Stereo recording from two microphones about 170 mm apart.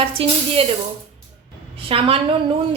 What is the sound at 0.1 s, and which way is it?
Speech, 35° right (ahead or behind).